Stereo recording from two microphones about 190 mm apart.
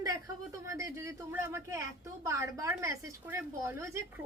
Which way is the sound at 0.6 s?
15° right (ahead or behind).